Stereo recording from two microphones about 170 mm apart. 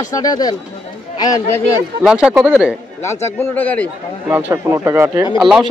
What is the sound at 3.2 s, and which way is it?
Speech, 10° left (ahead or behind).